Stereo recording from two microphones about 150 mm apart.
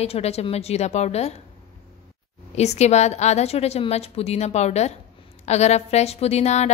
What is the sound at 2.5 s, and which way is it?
A woman's voice, 45° left (ahead or behind).